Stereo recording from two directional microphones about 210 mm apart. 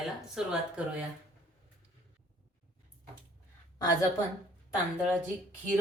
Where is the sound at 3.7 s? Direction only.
15° left (ahead or behind).